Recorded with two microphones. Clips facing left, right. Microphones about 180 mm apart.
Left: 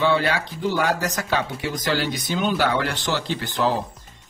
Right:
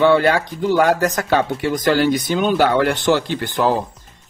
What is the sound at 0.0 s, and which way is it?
Speech, 50° right (ahead or behind).